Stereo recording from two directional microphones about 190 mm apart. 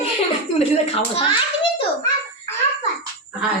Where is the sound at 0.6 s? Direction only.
30° left (ahead or behind).